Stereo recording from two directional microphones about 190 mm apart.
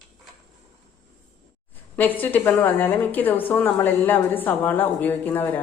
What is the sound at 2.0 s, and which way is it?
Speech, 10° left (ahead or behind).